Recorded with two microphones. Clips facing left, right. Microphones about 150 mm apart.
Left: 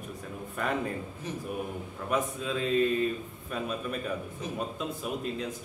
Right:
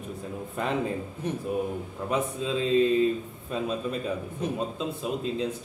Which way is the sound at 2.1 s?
25° right (ahead or behind).